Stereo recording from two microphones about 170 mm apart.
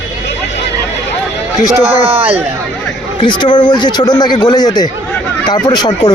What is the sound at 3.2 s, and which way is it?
Speech, 30° left (ahead or behind).